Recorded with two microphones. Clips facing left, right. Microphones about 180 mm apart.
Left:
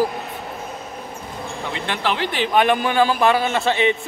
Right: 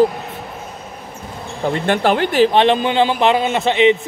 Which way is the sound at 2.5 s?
25° right (ahead or behind).